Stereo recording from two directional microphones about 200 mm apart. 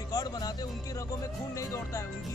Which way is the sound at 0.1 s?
20° left (ahead or behind).